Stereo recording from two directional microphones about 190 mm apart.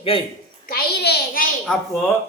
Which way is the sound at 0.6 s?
55° left (ahead or behind).